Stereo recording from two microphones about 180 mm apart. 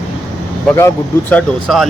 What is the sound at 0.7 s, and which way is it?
Speech, 10° left (ahead or behind).